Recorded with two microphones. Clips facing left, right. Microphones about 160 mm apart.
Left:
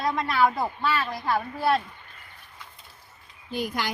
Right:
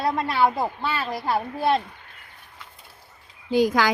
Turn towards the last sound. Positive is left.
turn(degrees=-90)